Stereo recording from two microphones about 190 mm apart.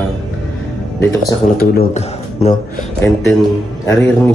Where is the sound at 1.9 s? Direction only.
35° left (ahead or behind).